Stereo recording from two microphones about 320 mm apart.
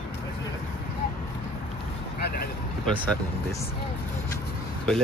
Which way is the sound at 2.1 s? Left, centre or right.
Left.